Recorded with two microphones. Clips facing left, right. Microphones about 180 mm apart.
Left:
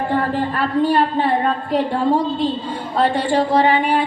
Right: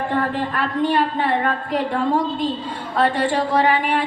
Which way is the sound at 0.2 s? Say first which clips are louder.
Left 2 dB; 35° left (ahead or behind).